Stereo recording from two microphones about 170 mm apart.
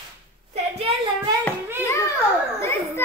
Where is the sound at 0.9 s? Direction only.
35° right (ahead or behind).